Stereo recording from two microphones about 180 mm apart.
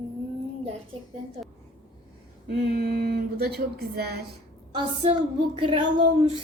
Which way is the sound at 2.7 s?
60° right (ahead or behind).